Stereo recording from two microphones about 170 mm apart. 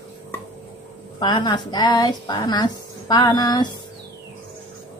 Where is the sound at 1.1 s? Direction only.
25° left (ahead or behind).